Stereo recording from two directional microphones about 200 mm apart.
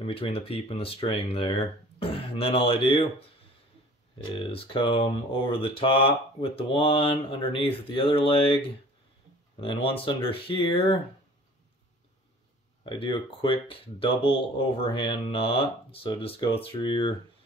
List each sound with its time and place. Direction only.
0.0 s speech: 30° left (ahead or behind)
4.4 s speech: 25° left (ahead or behind)
12.8 s speech: 25° left (ahead or behind)